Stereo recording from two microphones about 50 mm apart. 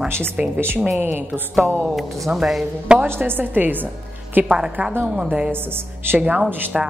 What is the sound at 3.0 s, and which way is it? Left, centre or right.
Speech, right.